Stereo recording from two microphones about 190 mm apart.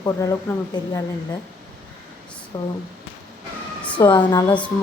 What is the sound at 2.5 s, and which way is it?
Speech, 20° left (ahead or behind).